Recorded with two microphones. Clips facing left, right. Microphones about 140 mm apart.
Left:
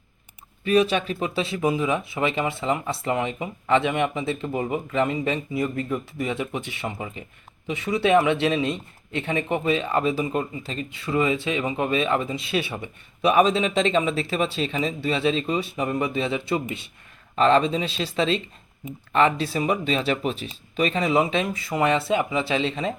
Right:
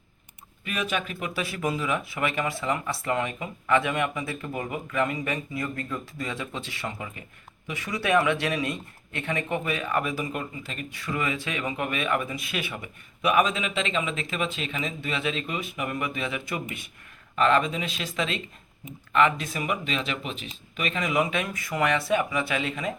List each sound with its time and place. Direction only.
0.6 s speech: 30° left (ahead or behind)